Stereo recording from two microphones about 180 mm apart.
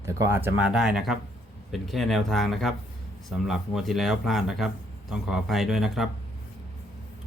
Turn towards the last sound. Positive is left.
turn(degrees=0)  # may be behind; listen again after turning